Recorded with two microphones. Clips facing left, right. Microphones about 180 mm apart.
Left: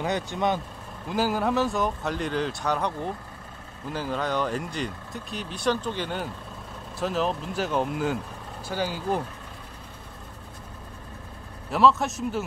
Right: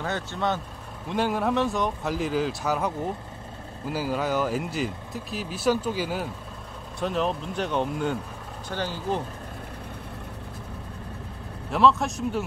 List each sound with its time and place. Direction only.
0.0 s speech: 15° left (ahead or behind)
1.0 s speech: centre (ahead or behind)
11.7 s speech: centre (ahead or behind)